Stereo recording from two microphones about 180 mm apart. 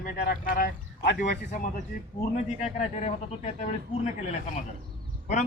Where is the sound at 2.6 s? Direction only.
35° left (ahead or behind).